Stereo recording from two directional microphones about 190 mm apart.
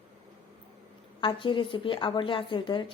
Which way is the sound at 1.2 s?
25° left (ahead or behind).